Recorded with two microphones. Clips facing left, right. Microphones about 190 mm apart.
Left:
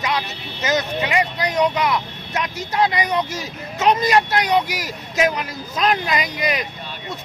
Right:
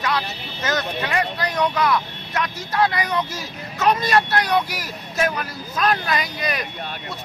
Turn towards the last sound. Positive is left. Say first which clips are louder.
# left 3 dB
turn(degrees=20)  # may be behind; listen again after turning